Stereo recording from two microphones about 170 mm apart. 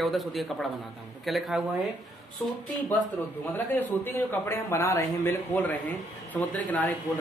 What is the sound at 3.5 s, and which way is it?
A man's voice, 10° left (ahead or behind).